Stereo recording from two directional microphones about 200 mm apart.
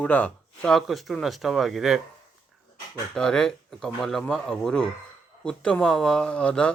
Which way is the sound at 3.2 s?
5° left (ahead or behind).